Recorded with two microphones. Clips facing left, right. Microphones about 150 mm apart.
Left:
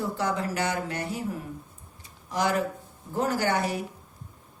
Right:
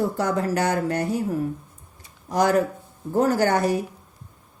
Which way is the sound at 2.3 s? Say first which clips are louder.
Right 6 dB; 45° right (ahead or behind).